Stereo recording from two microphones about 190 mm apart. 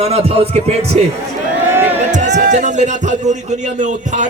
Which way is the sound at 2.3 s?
65° right (ahead or behind).